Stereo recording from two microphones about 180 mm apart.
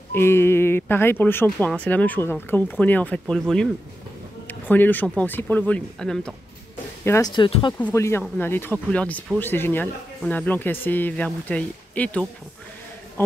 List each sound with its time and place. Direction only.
0.1 s speech: 15° left (ahead or behind)
7.1 s speech: 20° left (ahead or behind)
7.8 s speech: 15° left (ahead or behind)